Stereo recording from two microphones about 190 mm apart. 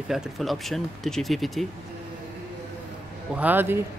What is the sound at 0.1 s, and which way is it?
Speech, centre (ahead or behind).